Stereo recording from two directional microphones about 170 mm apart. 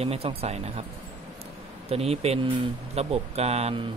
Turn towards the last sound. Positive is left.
turn(degrees=-40)  # may be behind; listen again after turning